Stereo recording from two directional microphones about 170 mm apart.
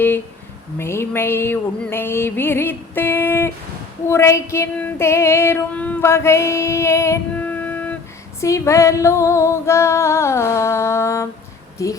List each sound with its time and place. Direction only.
0.8 s female singing: 15° left (ahead or behind)
11.8 s speech: 20° left (ahead or behind)